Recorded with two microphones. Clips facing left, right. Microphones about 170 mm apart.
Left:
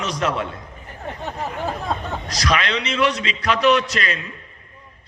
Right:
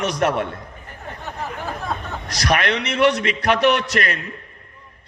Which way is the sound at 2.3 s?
60° right (ahead or behind).